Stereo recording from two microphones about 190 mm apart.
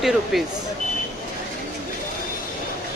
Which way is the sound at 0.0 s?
Centre (ahead or behind).